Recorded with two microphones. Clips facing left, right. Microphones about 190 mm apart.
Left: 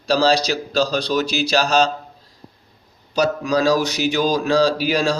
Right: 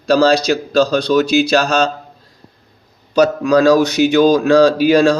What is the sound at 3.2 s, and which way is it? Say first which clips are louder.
Speech: right 7 dB; 55° right (ahead or behind).